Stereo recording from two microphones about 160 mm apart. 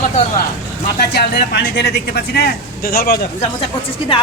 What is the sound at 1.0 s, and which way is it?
Speech, 90° left.